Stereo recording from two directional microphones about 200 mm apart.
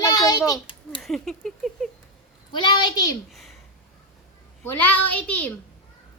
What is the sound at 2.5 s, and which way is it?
Speech, 20° left (ahead or behind).